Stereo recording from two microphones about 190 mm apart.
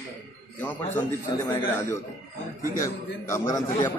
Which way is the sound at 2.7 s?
15° left (ahead or behind).